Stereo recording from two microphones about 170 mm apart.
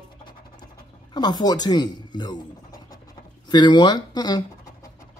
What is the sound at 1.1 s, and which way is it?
Speech, 25° left (ahead or behind).